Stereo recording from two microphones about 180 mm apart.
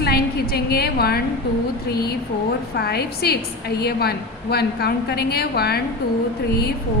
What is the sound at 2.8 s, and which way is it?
A woman's voice, 60° left (ahead or behind).